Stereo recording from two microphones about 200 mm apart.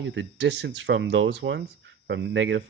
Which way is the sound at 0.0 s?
65° right (ahead or behind).